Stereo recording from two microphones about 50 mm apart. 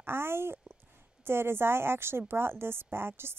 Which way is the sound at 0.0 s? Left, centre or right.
Right.